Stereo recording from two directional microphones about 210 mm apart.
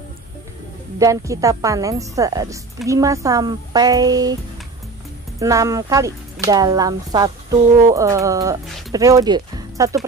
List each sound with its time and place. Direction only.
0.9 s a woman's voice: 15° right (ahead or behind)
5.4 s a woman's voice: 15° right (ahead or behind)